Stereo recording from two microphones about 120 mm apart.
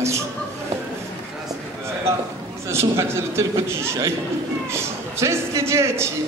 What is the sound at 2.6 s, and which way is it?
A man's voice, 20° right (ahead or behind).